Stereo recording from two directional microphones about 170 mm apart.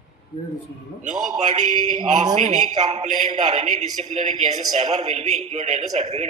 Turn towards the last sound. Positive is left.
turn(degrees=-40)  # may be behind; listen again after turning